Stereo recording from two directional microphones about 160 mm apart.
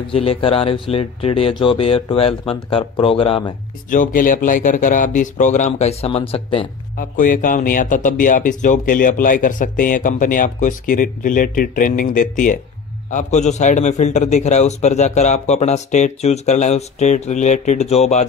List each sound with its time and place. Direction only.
0.1 s speech: 35° left (ahead or behind)
3.9 s a man's voice: 55° left (ahead or behind); by 6.7 s 35° left (ahead or behind)
7.0 s a man's voice: 55° left (ahead or behind)